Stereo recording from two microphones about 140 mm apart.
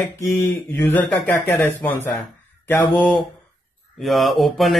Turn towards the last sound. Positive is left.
turn(degrees=0)  # may be behind; listen again after turning